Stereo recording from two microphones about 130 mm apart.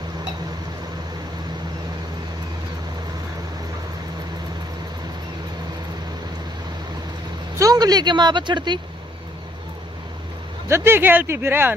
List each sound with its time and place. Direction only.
7.5 s speech: 25° right (ahead or behind)
10.7 s speech: 20° right (ahead or behind)